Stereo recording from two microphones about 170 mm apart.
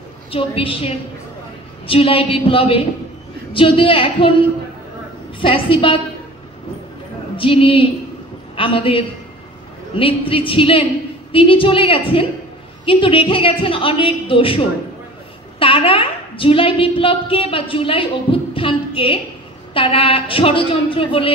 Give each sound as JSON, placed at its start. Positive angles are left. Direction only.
{"t": 0.3, "sound": "a woman's voice", "side_deg": 30}
{"t": 7.3, "sound": "a woman's voice", "side_deg": 30}
{"t": 15.6, "sound": "a woman's voice", "side_deg": 30}